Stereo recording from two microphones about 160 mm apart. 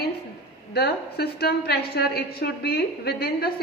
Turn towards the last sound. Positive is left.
turn(degrees=75)  # may be behind; listen again after turning